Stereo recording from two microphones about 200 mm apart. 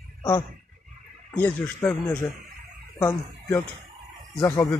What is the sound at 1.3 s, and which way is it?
Speech, 10° left (ahead or behind).